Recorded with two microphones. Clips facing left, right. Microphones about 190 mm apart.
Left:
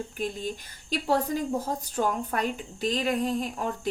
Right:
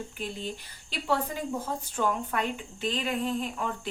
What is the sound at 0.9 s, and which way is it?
A woman's voice, 40° left (ahead or behind).